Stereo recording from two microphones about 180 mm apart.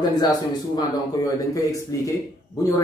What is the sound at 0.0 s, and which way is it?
Speech, 20° left (ahead or behind).